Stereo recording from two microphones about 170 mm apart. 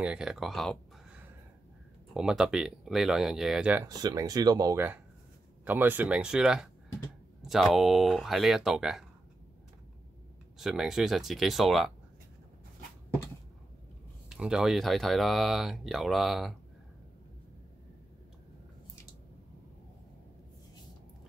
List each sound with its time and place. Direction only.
0.0 s speech: 5° right (ahead or behind)
2.1 s speech: 5° right (ahead or behind)
3.8 s speech: 20° right (ahead or behind); by 9.0 s centre (ahead or behind)
10.6 s speech: centre (ahead or behind)
14.3 s speech: 5° right (ahead or behind)